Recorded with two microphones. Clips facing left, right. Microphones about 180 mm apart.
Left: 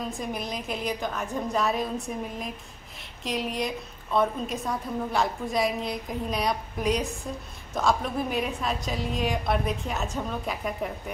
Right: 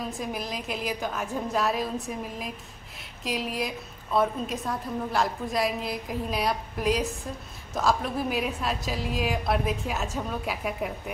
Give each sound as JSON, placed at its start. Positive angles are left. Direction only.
{"t": 0.2, "sound": "a woman's voice", "side_deg": 0}